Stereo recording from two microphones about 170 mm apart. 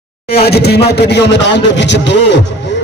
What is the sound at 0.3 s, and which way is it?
Speech, 70° left (ahead or behind).